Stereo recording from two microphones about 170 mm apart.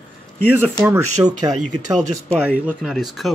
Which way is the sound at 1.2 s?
15° right (ahead or behind).